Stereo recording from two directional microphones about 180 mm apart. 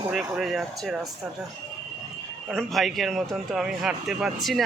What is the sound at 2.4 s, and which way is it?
Speech, centre (ahead or behind).